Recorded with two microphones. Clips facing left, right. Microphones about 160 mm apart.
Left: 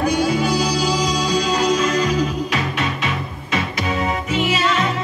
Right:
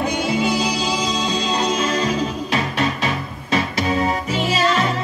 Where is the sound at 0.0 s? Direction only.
25° right (ahead or behind).